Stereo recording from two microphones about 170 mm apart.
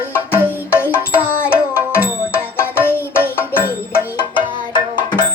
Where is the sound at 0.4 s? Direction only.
15° left (ahead or behind).